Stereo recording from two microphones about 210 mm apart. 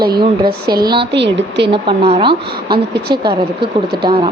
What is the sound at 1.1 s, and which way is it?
Speech, 55° right (ahead or behind).